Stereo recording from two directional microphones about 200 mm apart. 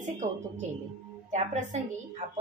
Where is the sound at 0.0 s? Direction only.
35° right (ahead or behind).